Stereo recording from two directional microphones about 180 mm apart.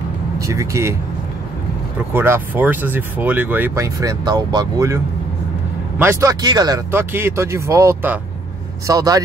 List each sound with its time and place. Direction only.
0.4 s speech: 15° right (ahead or behind)
2.1 s speech: 10° right (ahead or behind)